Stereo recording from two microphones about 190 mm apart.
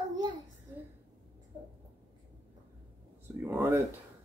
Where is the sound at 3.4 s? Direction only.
10° right (ahead or behind).